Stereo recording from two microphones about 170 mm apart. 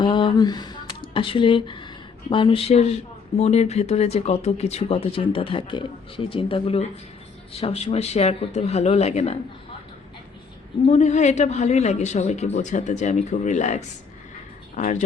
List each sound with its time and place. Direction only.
0.0 s a sound: 30° left (ahead or behind)
2.3 s speech: 30° left (ahead or behind)
10.8 s a woman's voice: 45° left (ahead or behind)